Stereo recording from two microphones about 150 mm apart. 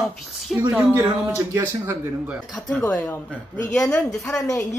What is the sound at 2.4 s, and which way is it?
Speech, 5° left (ahead or behind).